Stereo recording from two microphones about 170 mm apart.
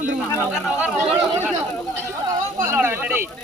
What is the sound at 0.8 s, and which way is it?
Chatter, 10° right (ahead or behind).